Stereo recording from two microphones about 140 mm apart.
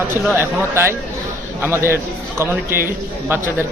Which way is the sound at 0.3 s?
15° right (ahead or behind).